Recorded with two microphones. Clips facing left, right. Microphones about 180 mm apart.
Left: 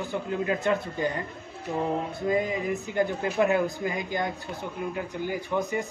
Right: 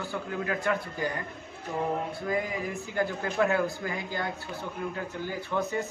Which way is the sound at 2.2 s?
20° left (ahead or behind).